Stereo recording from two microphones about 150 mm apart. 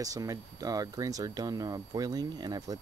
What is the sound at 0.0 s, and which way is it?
Speech, 25° right (ahead or behind).